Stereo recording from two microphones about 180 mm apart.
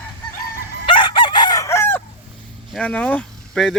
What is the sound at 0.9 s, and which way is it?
Chicken, 30° left (ahead or behind).